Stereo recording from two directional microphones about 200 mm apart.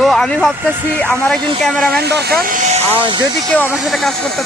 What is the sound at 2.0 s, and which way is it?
Speech, 55° right (ahead or behind).